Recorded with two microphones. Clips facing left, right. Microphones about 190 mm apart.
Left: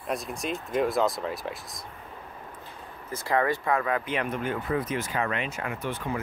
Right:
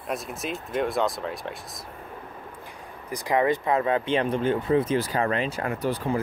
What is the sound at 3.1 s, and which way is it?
Speech, 15° right (ahead or behind).